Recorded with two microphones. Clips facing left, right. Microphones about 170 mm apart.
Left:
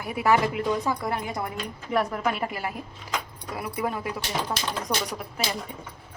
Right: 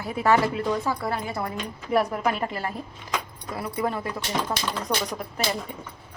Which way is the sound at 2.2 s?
5° left (ahead or behind).